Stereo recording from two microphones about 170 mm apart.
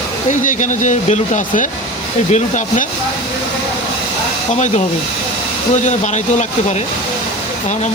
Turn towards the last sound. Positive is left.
turn(degrees=45)  # may be behind; listen again after turning